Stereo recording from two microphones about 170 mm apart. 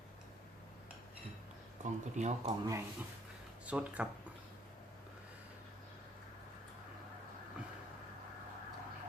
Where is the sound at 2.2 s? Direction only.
40° right (ahead or behind).